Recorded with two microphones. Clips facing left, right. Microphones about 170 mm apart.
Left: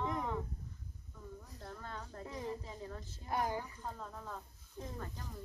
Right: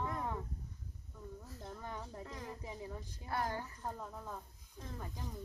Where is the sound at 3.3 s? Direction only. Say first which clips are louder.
Left 2 dB; 15° left (ahead or behind).